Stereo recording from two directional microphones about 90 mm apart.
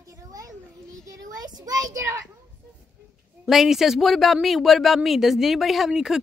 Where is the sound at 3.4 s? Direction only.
5° right (ahead or behind).